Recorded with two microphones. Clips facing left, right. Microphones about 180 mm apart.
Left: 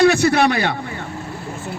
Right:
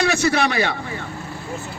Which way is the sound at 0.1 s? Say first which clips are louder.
Left 4 dB; 55° left (ahead or behind).